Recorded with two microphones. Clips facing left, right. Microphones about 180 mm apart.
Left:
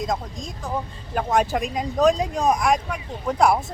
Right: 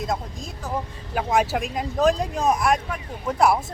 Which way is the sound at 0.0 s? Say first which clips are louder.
Left 1 dB; 5° right (ahead or behind).